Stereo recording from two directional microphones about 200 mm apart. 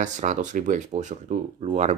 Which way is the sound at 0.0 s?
40° right (ahead or behind).